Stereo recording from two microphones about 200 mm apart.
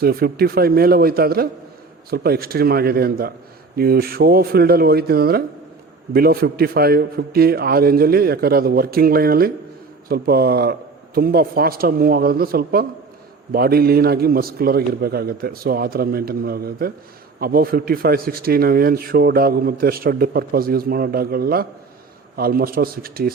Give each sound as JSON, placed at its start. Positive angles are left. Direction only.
{"t": 0.0, "sound": "speech", "side_deg": -50}